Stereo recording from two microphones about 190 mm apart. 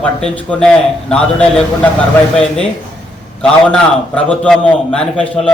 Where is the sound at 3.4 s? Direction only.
5° left (ahead or behind).